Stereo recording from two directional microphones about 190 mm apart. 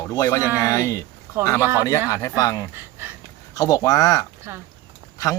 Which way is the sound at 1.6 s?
10° right (ahead or behind).